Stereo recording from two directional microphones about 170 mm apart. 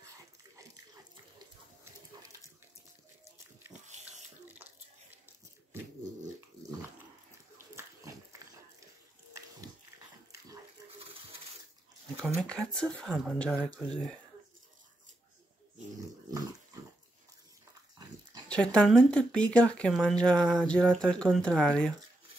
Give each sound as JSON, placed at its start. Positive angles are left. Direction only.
{"t": 3.8, "sound": "pig", "side_deg": -45}
{"t": 7.5, "sound": "a sound", "side_deg": -15}
{"t": 12.4, "sound": "speech", "side_deg": 5}
{"t": 16.0, "sound": "dog", "side_deg": -20}
{"t": 18.5, "sound": "speech", "side_deg": 5}